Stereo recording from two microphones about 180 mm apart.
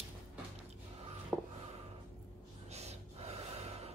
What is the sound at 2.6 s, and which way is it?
Gasp, 35° right (ahead or behind).